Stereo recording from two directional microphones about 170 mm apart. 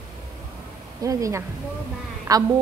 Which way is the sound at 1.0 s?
20° right (ahead or behind).